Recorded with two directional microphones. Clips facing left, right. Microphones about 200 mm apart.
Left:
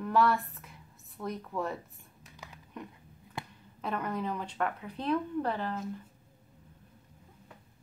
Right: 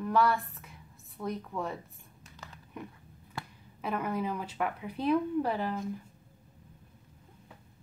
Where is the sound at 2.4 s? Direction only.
15° left (ahead or behind).